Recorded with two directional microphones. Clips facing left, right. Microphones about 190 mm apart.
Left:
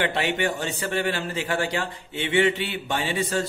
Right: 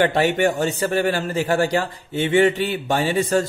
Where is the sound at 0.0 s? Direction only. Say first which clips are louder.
Right 7 dB; 45° right (ahead or behind).